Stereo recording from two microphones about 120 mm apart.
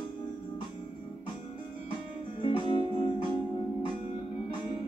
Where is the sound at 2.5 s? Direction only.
40° left (ahead or behind).